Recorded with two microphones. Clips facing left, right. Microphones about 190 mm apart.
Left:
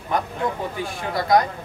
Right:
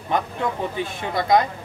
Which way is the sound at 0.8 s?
20° right (ahead or behind).